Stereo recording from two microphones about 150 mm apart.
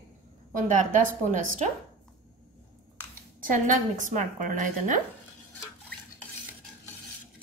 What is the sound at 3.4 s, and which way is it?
A woman's voice, 60° right (ahead or behind).